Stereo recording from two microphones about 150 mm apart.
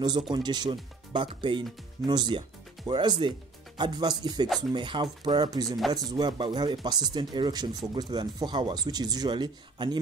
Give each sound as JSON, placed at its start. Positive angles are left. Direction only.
{"t": 0.3, "sound": "speech", "side_deg": -30}
{"t": 5.8, "sound": "speech", "side_deg": 0}
{"t": 6.0, "sound": "speech", "side_deg": -30}